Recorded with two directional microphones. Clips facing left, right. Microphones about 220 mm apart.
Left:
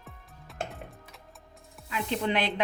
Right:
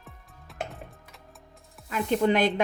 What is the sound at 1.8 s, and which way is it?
Speech, 45° right (ahead or behind).